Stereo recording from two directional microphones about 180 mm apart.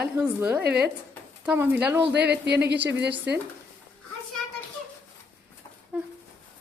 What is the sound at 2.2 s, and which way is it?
Speech, 70° right (ahead or behind).